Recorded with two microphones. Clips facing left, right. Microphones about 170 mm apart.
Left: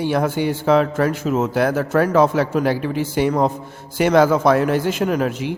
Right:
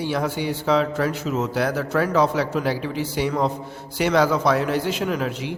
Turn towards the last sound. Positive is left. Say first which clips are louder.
# left 5 dB
turn(degrees=50)  # may be behind; listen again after turning